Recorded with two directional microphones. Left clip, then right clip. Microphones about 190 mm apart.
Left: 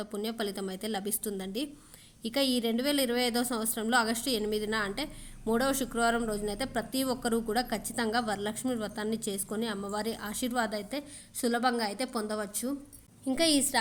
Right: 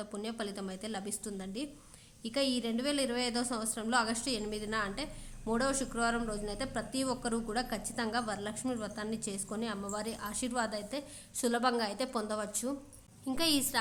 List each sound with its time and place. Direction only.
0.0 s a woman's voice: 20° left (ahead or behind)